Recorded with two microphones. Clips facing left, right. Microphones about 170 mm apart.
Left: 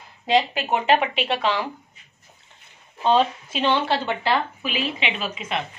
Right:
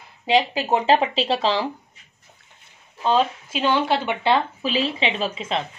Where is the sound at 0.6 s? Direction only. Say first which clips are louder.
Right 2 dB; 30° right (ahead or behind).